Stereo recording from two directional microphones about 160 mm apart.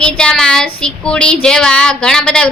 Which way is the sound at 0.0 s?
5° left (ahead or behind).